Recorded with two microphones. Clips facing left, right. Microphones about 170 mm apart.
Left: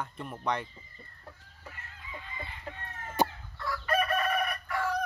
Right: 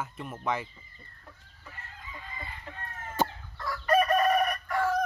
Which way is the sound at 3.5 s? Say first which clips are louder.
Right 5 dB; 40° right (ahead or behind).